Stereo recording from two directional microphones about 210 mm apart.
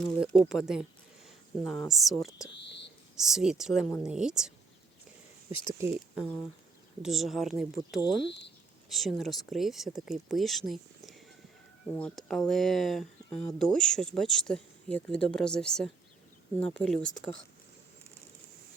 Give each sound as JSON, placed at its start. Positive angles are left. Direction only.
{"t": 0.0, "sound": "speech", "side_deg": 0}
{"t": 3.2, "sound": "speech", "side_deg": 0}
{"t": 5.5, "sound": "speech", "side_deg": 25}
{"t": 5.8, "sound": "speech", "side_deg": -15}
{"t": 7.0, "sound": "speech", "side_deg": 0}
{"t": 8.3, "sound": "speech", "side_deg": 55}
{"t": 8.9, "sound": "speech", "side_deg": 0}